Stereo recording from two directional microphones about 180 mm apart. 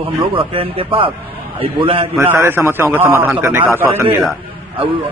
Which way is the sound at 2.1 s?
15° right (ahead or behind).